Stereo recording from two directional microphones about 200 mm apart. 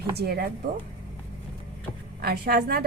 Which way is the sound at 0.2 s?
50° right (ahead or behind).